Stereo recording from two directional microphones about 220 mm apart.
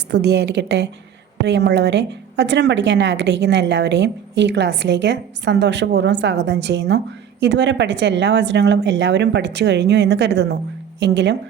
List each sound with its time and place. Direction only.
0.1 s a woman's voice: 50° right (ahead or behind)